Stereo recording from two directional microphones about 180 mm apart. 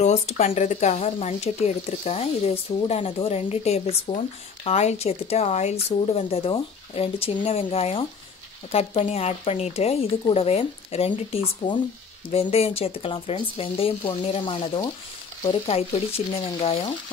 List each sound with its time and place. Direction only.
0.0 s speech: 40° left (ahead or behind)